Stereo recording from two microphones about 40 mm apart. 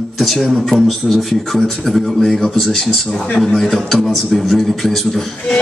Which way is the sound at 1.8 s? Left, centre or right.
Centre.